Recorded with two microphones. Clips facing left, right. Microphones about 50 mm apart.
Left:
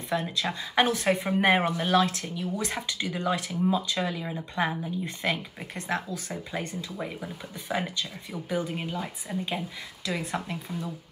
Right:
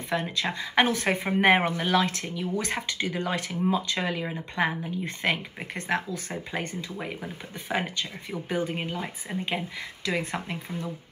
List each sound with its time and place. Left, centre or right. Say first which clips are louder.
0.1 s speech: even; right